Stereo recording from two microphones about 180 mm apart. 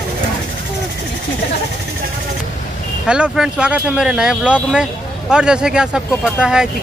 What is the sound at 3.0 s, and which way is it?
Speech, 5° right (ahead or behind).